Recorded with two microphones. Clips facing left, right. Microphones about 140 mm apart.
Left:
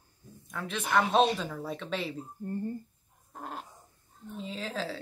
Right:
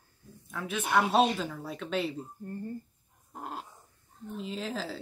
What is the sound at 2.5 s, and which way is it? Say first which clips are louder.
Speech: left 5 dB; 25° left (ahead or behind).